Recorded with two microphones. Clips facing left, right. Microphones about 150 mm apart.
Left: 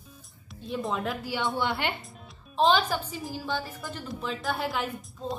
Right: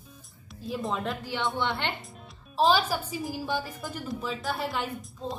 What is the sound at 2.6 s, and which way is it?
Speech, 5° right (ahead or behind).